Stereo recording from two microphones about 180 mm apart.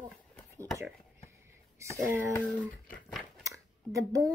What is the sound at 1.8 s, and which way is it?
Speech, 15° right (ahead or behind).